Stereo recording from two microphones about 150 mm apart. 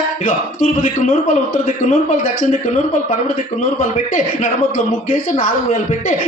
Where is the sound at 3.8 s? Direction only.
55° left (ahead or behind).